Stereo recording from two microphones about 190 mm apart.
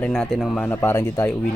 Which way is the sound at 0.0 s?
Centre (ahead or behind).